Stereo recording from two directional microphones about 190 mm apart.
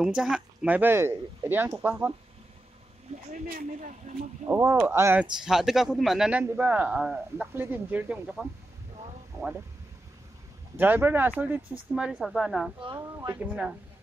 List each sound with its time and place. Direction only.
0.0 s speech: 5° right (ahead or behind)
3.3 s speech: 45° right (ahead or behind)
4.5 s speech: 15° right (ahead or behind)
10.8 s speech: 10° right (ahead or behind)
12.8 s speech: 20° right (ahead or behind)